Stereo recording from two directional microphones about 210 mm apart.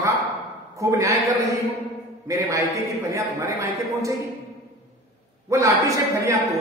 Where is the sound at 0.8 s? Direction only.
15° right (ahead or behind).